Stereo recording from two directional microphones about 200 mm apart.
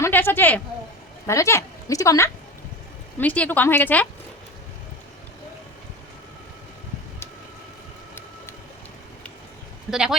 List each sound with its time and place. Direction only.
0.0 s speech: 10° left (ahead or behind)
9.9 s speech: centre (ahead or behind)